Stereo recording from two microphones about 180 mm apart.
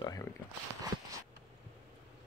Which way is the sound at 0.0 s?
20° left (ahead or behind).